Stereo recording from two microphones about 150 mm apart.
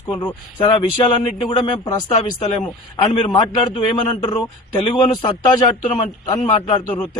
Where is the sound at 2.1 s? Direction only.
40° left (ahead or behind).